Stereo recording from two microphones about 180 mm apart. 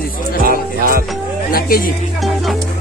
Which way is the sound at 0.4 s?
55° right (ahead or behind).